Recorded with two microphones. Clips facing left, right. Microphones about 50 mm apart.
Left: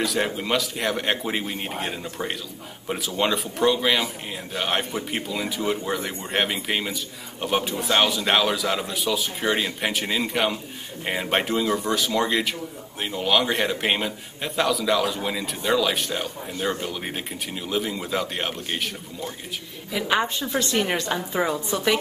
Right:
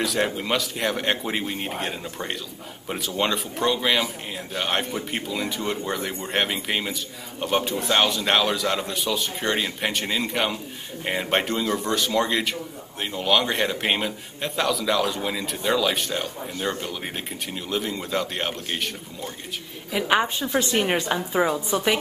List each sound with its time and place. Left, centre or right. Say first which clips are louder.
0.0 s a man's voice: even; centre
19.9 s a woman's voice: right 2 dB; centre